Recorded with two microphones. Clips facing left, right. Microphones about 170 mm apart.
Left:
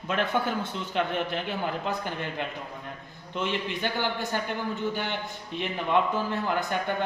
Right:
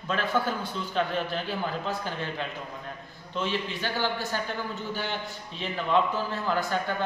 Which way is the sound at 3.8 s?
20° left (ahead or behind).